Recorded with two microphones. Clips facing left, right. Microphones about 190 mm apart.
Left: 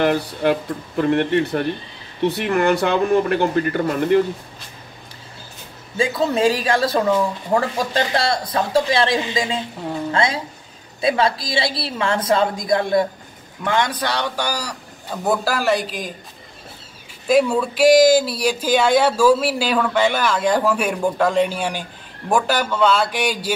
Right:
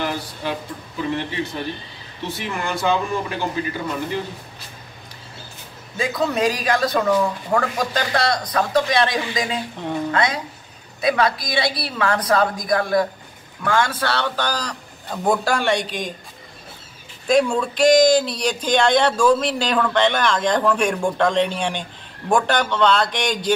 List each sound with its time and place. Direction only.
0.0 s speech: 60° left (ahead or behind)
5.9 s speech: 30° left (ahead or behind); by 16.2 s centre (ahead or behind)
17.3 s speech: 5° left (ahead or behind)